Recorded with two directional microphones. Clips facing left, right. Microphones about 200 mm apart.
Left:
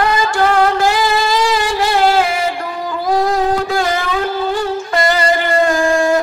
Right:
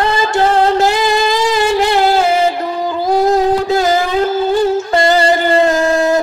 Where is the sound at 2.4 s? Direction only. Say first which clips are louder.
Right 5 dB; 25° right (ahead or behind).